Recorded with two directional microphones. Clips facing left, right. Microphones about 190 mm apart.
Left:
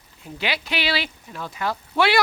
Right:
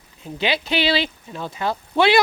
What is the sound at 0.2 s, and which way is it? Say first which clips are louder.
Speech: right 5 dB; 20° right (ahead or behind).